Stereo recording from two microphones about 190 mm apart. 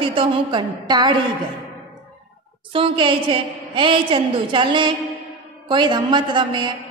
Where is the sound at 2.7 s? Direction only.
25° right (ahead or behind).